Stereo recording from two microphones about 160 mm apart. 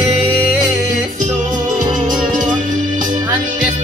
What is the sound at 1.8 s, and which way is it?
Music, 55° right (ahead or behind).